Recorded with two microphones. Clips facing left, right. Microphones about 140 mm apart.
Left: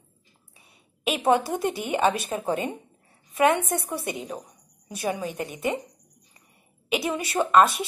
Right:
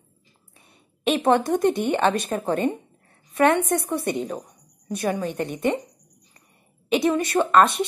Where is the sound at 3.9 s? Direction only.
Centre (ahead or behind).